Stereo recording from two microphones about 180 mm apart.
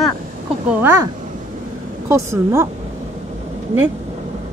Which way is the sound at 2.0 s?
15° right (ahead or behind).